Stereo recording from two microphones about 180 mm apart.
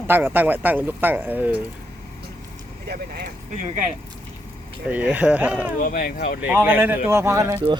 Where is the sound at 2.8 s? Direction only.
60° right (ahead or behind).